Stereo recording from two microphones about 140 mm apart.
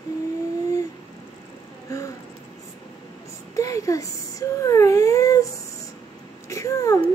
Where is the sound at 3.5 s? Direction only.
25° left (ahead or behind).